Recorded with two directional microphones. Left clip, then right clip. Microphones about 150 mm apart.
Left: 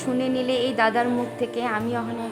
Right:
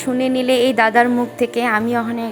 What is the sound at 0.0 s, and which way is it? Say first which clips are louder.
A woman's voice: right 6 dB; 30° right (ahead or behind).